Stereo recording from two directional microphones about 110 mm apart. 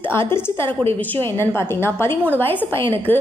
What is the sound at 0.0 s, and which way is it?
A woman's voice, 20° left (ahead or behind).